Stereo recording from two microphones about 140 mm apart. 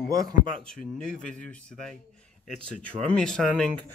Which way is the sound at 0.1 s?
25° right (ahead or behind).